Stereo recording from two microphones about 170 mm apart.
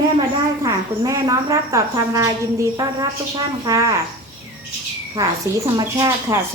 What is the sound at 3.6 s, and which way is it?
Speech, 20° right (ahead or behind).